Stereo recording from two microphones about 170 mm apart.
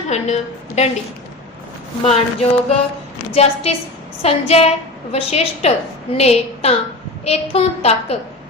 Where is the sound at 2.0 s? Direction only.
35° left (ahead or behind).